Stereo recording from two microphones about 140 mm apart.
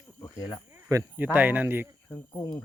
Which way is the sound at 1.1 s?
10° right (ahead or behind).